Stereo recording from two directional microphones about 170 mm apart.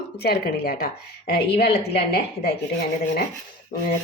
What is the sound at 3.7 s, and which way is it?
Speech, 50° left (ahead or behind).